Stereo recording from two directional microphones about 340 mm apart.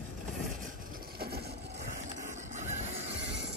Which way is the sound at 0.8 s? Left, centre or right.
Right.